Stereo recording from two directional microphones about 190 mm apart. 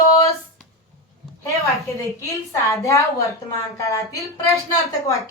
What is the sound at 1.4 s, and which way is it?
Speech, 15° left (ahead or behind).